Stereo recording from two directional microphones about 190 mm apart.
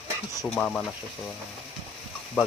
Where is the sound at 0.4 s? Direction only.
5° left (ahead or behind).